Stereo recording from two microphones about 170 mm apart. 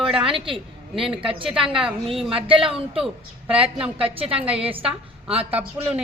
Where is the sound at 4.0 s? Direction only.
35° right (ahead or behind).